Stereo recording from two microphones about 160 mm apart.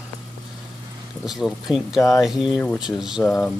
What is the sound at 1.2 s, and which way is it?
Speech, centre (ahead or behind).